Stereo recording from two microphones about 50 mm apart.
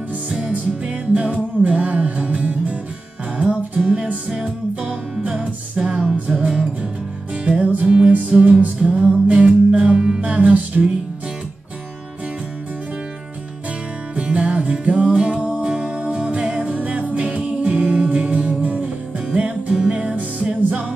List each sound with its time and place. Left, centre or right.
0.5 s music: right
3.3 s music: centre
6.1 s music: right
7.4 s music: right
14.1 s music: right
15.6 s music: centre
17.1 s a capella: right
17.5 s music: right